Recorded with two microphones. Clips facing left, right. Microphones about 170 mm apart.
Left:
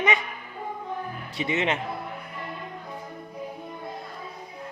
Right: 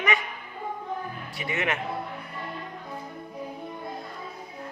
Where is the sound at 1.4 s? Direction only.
20° left (ahead or behind).